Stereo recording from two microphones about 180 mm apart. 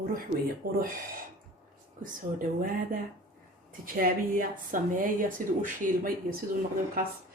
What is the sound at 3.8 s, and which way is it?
Speech, 50° right (ahead or behind).